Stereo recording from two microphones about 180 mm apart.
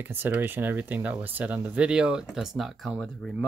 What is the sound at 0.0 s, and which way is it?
Speech, 10° right (ahead or behind).